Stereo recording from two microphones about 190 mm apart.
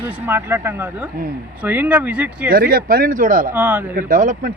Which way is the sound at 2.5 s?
50° right (ahead or behind).